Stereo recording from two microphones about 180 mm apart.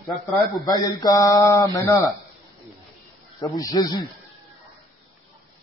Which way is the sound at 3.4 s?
20° left (ahead or behind).